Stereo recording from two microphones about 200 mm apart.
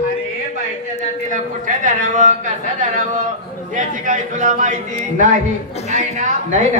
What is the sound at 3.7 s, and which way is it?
A woman's voice, 35° right (ahead or behind).